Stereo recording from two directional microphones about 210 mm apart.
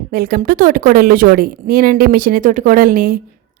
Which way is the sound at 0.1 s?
40° right (ahead or behind).